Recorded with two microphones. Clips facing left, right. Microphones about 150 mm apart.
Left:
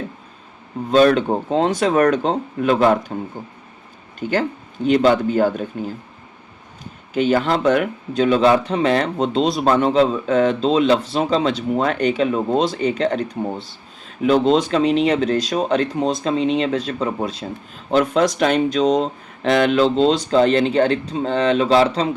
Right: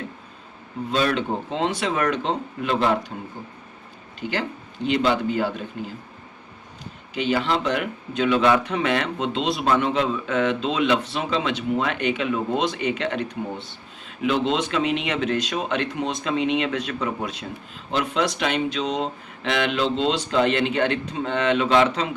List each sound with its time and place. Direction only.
0.9 s speech: 45° left (ahead or behind)
4.2 s speech: 45° left (ahead or behind)
7.1 s speech: 45° left (ahead or behind)